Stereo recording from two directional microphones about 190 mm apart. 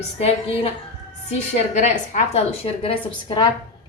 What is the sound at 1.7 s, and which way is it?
Speech, 40° left (ahead or behind).